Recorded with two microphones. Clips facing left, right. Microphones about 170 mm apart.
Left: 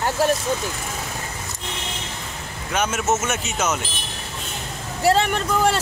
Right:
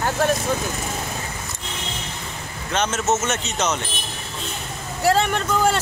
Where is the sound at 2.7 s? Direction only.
10° left (ahead or behind).